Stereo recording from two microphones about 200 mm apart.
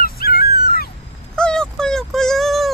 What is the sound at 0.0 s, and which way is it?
Dog, 50° left (ahead or behind).